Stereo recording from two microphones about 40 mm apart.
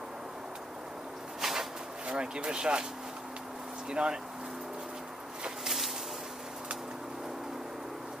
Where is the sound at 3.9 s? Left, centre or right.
Right.